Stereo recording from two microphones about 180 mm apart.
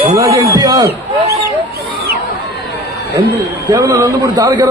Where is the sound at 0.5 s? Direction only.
20° right (ahead or behind).